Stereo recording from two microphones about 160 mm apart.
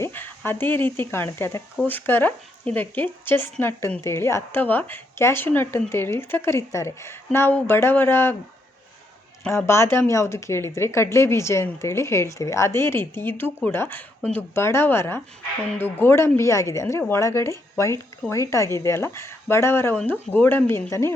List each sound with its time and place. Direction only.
0.0 s speech: 15° left (ahead or behind)
9.5 s speech: 15° left (ahead or behind)